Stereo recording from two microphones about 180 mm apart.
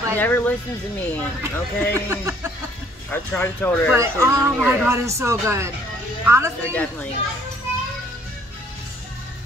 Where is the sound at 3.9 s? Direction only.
15° right (ahead or behind).